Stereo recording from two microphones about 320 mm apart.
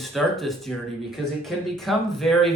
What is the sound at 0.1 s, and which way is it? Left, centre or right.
Speech, centre.